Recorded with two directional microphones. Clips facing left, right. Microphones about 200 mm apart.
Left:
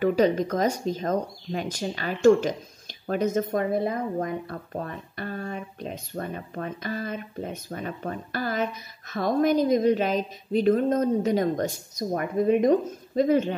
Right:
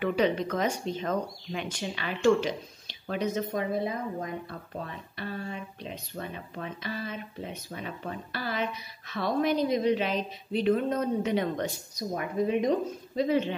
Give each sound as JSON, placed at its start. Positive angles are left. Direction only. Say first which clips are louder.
{"t": 0.0, "sound": "speech", "louder": "left 5 dB", "side_deg": 40}